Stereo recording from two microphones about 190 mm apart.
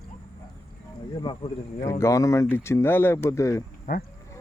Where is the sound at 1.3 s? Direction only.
25° left (ahead or behind).